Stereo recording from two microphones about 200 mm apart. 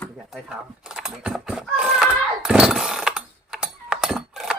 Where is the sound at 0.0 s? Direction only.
Centre (ahead or behind).